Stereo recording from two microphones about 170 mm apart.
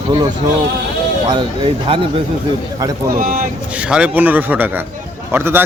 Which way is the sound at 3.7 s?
5° right (ahead or behind).